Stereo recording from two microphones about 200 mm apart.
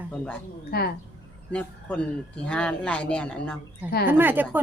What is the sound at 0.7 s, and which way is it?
Speech, 50° left (ahead or behind).